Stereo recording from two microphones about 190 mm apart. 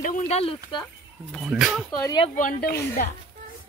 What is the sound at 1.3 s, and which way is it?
Speech, centre (ahead or behind).